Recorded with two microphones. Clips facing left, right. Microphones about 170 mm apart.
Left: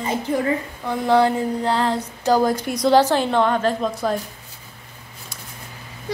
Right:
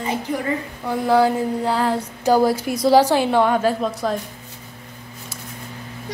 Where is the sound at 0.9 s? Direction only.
5° right (ahead or behind).